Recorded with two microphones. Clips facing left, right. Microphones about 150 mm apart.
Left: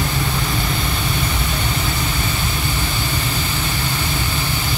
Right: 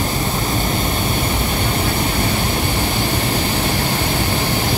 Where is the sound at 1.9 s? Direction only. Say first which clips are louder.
Right 4 dB; 40° right (ahead or behind).